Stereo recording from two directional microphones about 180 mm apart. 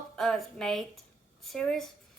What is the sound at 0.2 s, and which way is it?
A woman's voice, centre (ahead or behind).